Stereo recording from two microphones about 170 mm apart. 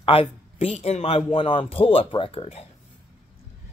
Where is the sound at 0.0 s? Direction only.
35° left (ahead or behind).